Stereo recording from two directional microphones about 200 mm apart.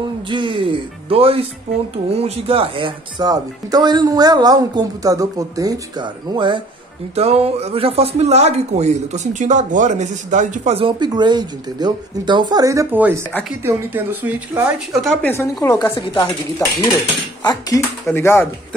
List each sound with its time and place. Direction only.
0.3 s speech: 25° right (ahead or behind); by 15.1 s centre (ahead or behind)
15.2 s speech: 10° left (ahead or behind)